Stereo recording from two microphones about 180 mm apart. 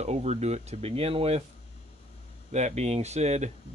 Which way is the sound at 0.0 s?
40° right (ahead or behind).